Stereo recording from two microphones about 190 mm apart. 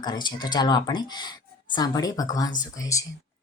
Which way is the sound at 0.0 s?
25° left (ahead or behind).